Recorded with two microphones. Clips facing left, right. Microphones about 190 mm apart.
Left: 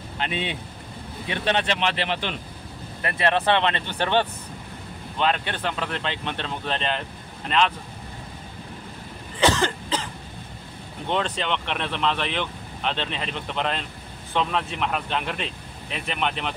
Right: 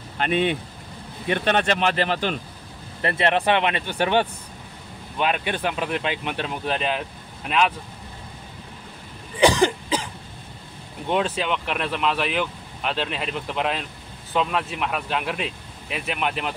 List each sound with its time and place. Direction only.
0.2 s speech: 50° right (ahead or behind)
3.0 s speech: 25° right (ahead or behind); by 7.7 s 10° right (ahead or behind)
9.4 s cough: 15° right (ahead or behind)
11.1 s speech: 5° right (ahead or behind)